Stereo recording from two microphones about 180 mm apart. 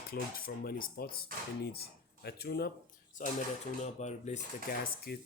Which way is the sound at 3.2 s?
45° left (ahead or behind).